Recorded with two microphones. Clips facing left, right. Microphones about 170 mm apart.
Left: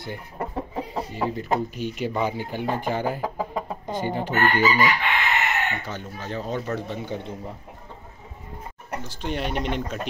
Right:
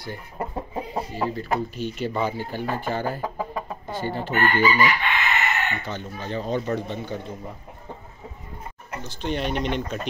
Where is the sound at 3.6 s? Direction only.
15° left (ahead or behind).